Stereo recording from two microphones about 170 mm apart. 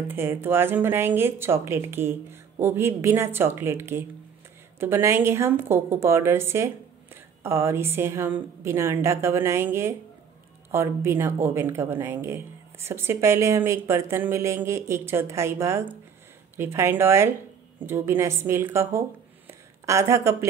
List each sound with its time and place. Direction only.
0.1 s a woman's voice: 15° right (ahead or behind)